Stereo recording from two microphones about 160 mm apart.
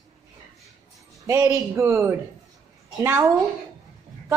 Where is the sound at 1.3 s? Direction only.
20° right (ahead or behind).